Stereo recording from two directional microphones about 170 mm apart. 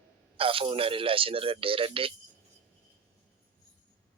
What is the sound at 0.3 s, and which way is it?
Speech, 30° right (ahead or behind).